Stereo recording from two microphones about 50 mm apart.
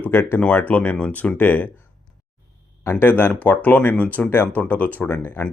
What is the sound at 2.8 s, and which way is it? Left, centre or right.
Speech, left.